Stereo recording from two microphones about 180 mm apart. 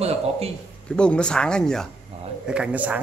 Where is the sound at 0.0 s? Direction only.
35° right (ahead or behind).